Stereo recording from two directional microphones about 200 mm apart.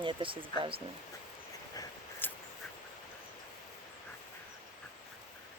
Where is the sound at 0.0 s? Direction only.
25° right (ahead or behind).